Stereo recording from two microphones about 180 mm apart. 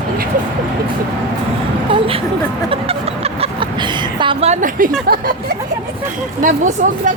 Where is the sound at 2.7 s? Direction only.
35° right (ahead or behind); by 4.9 s 50° right (ahead or behind).